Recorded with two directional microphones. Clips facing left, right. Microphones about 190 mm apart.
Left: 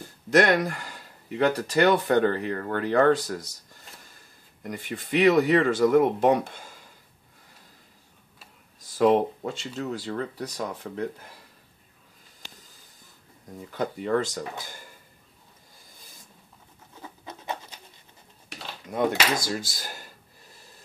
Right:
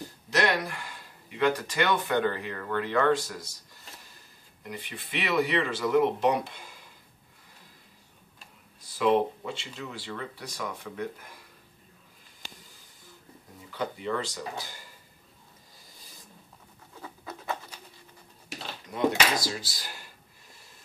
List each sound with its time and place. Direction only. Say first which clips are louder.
0.3 s speech: left 7 dB; 50° left (ahead or behind)
4.6 s speech: left 7 dB; 45° left (ahead or behind)
8.9 s speech: left 4 dB; 45° left (ahead or behind)
13.7 s speech: left 5 dB; 45° left (ahead or behind)
17.0 s scratch: even; 20° left (ahead or behind)
19.5 s speech: left 6 dB; 45° left (ahead or behind)